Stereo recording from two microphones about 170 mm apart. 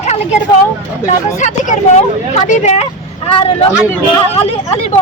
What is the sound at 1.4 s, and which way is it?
Speech, 45° left (ahead or behind).